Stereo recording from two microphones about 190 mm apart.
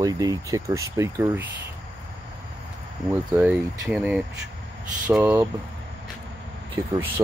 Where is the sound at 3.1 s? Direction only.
5° right (ahead or behind).